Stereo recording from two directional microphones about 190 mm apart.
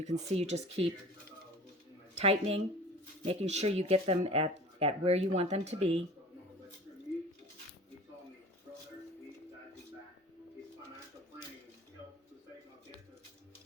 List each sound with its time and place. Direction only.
0.0 s speech: 35° right (ahead or behind)
2.1 s speech: 30° right (ahead or behind)